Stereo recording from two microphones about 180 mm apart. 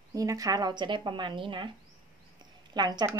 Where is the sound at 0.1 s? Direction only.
20° right (ahead or behind).